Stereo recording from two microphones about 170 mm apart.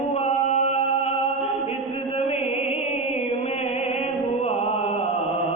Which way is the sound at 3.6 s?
35° left (ahead or behind).